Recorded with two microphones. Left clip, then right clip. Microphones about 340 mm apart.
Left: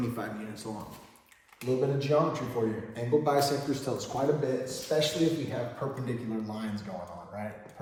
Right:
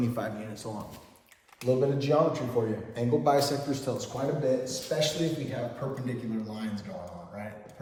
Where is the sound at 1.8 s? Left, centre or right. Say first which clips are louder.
Even; centre.